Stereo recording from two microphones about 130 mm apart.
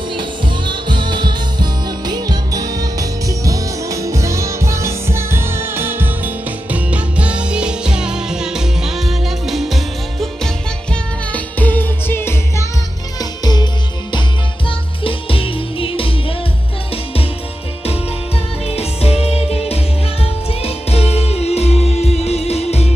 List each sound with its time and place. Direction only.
0.1 s music: 40° right (ahead or behind); by 12.6 s 20° left (ahead or behind)
13.2 s music: 30° left (ahead or behind)
15.0 s music: 45° left (ahead or behind)
18.7 s music: 50° left (ahead or behind)